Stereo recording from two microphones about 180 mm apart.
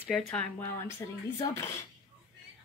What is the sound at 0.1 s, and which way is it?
Speech, 10° left (ahead or behind).